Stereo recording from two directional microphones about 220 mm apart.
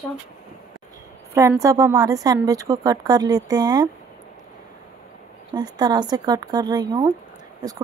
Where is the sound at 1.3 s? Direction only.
15° right (ahead or behind).